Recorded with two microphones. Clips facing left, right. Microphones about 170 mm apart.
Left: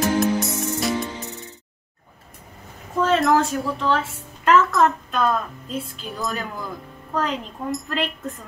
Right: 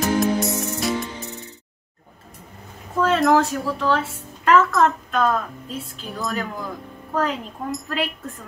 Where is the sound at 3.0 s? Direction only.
Centre (ahead or behind).